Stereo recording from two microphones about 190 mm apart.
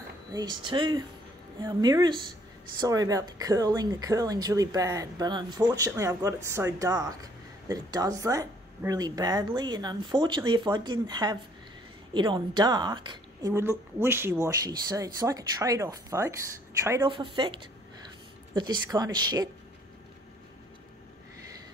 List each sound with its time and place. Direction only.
0.3 s a woman's voice: 20° right (ahead or behind)
17.1 s speech: 25° right (ahead or behind)